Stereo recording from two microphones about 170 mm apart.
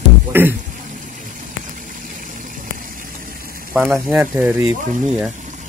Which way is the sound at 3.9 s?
10° right (ahead or behind).